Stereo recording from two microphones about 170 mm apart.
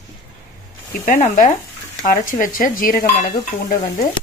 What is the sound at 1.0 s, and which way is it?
Speech, 50° left (ahead or behind).